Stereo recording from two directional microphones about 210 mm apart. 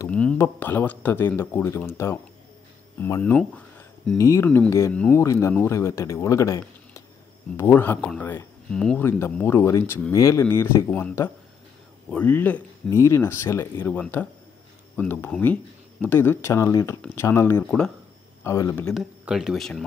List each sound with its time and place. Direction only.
0.0 s speech: 5° left (ahead or behind)
3.0 s speech: 10° left (ahead or behind)